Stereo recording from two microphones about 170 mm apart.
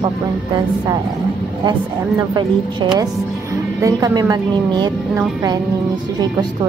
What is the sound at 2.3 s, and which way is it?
Speech, 25° right (ahead or behind).